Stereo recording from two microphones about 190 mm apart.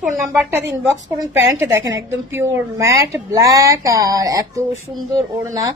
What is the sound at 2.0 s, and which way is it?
A woman's voice, 15° right (ahead or behind).